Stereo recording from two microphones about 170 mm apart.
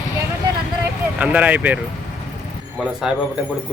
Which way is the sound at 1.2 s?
10° right (ahead or behind).